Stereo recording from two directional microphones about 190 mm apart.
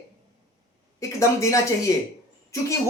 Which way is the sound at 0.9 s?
15° left (ahead or behind).